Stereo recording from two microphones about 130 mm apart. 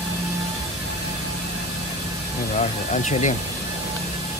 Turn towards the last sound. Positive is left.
turn(degrees=65)  # may be behind; listen again after turning